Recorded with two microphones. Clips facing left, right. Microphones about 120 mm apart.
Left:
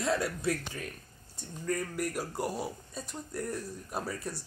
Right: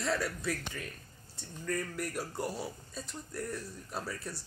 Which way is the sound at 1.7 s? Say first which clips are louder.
Left 2 dB; 10° left (ahead or behind).